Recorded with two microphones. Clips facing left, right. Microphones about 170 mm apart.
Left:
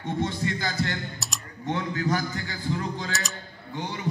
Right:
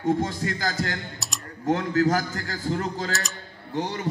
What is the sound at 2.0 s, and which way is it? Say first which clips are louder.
Speech: right 3 dB; 45° right (ahead or behind).